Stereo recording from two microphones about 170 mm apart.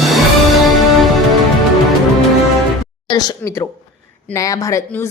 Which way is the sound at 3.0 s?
25° left (ahead or behind).